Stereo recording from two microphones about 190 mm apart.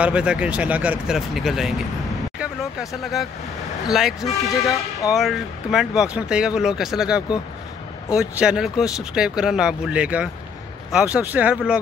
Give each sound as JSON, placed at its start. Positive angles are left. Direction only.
{"t": 0.0, "sound": "speech", "side_deg": -5}